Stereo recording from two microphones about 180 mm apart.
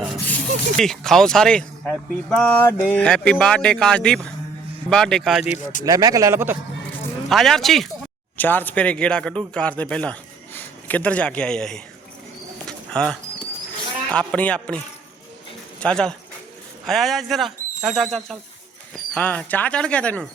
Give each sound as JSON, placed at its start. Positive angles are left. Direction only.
{"t": 0.8, "sound": "speech", "side_deg": 0}
{"t": 5.5, "sound": "speech", "side_deg": 45}
{"t": 5.8, "sound": "a man's voice", "side_deg": -20}
{"t": 7.3, "sound": "a man's voice", "side_deg": 0}
{"t": 12.6, "sound": "bird", "side_deg": 5}
{"t": 14.1, "sound": "a man's voice", "side_deg": 5}
{"t": 15.8, "sound": "a man's voice", "side_deg": 5}